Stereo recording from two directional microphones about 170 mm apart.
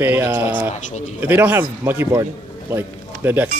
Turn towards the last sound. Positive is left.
turn(degrees=-10)  # may be behind; listen again after turning